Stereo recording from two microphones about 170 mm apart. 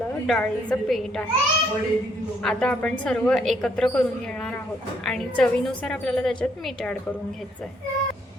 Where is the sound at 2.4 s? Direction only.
5° left (ahead or behind).